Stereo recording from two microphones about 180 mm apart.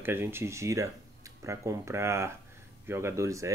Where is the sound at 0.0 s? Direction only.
10° right (ahead or behind).